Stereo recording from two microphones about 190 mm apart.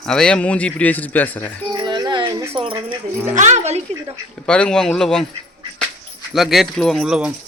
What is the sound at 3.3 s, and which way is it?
Speech, 40° right (ahead or behind).